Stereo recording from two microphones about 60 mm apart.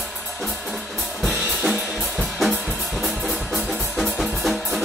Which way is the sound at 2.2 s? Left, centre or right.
Centre.